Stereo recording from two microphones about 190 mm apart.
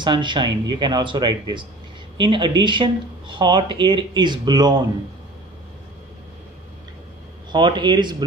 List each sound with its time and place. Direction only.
0.0 s speech: 25° right (ahead or behind)
7.5 s speech: 25° right (ahead or behind)